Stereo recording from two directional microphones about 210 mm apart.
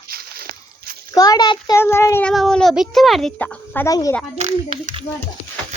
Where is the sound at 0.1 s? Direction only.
45° right (ahead or behind).